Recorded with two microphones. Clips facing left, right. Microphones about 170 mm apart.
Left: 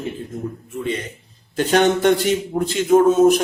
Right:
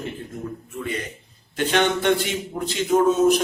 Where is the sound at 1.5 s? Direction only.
40° left (ahead or behind).